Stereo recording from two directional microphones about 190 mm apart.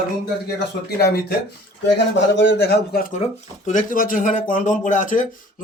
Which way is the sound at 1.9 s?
70° left (ahead or behind).